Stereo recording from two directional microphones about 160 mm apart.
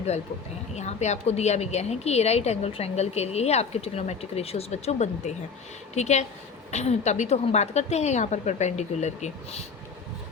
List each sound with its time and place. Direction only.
0.8 s a woman's voice: 45° left (ahead or behind)